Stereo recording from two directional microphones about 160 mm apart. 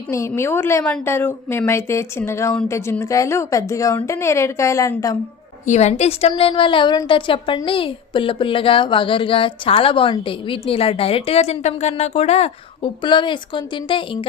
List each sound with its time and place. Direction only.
0.1 s a woman's voice: 15° left (ahead or behind)
5.6 s a woman's voice: 45° left (ahead or behind)